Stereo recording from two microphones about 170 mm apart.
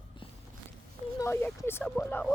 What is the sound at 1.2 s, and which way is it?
Speech, 15° left (ahead or behind).